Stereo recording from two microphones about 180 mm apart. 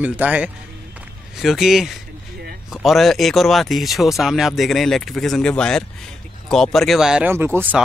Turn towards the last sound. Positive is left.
turn(degrees=-15)  # may be behind; listen again after turning